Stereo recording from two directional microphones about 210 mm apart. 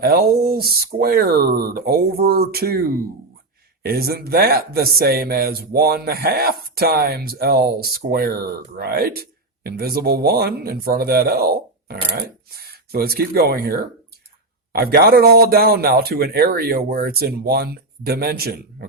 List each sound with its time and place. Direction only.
0.0 s speech: 45° right (ahead or behind)
3.8 s speech: 45° right (ahead or behind)